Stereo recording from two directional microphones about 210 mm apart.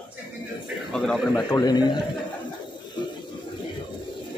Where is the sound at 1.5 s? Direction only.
20° left (ahead or behind).